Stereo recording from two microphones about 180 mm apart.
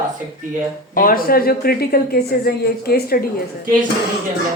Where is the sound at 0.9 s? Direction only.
55° left (ahead or behind).